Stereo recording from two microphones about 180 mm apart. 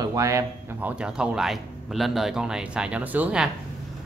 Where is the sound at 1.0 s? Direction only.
5° right (ahead or behind).